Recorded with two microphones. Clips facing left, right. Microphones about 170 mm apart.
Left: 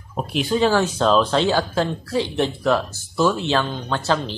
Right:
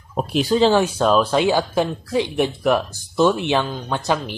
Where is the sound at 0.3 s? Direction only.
40° right (ahead or behind).